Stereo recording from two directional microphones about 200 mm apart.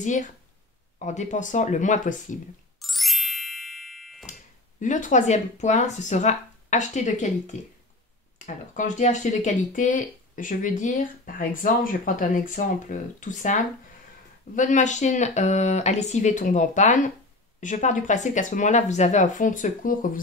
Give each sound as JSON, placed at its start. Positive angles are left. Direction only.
{"t": 0.0, "sound": "speech", "side_deg": 40}
{"t": 2.8, "sound": "ding", "side_deg": 0}
{"t": 4.3, "sound": "speech", "side_deg": 40}